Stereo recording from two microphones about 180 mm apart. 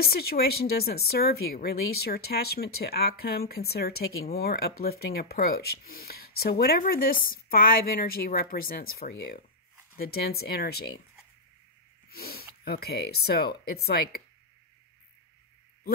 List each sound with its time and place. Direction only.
0.0 s speech: 60° left (ahead or behind)
12.1 s speech: 60° left (ahead or behind)